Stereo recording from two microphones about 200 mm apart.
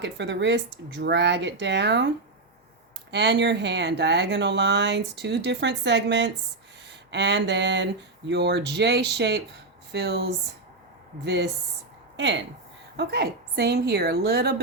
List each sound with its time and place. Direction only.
0.0 s a woman's voice: 60° right (ahead or behind)